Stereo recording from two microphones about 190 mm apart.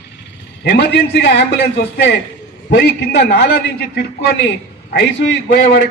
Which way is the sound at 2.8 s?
65° left (ahead or behind).